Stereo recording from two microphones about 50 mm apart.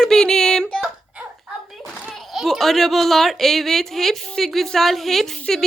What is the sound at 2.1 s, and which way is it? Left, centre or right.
A woman's voice, centre.